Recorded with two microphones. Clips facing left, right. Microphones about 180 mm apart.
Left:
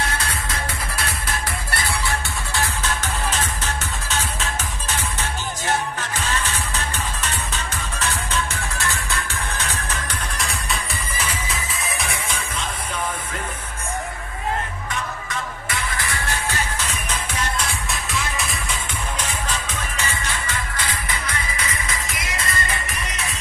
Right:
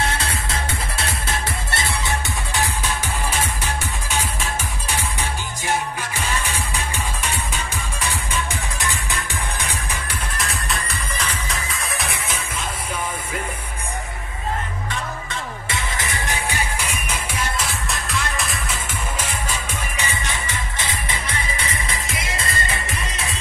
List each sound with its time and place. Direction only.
0.2 s music: 25° right (ahead or behind)
10.3 s music: centre (ahead or behind)
15.7 s music: 20° right (ahead or behind); by 18.6 s centre (ahead or behind)
20.0 s music: 20° right (ahead or behind)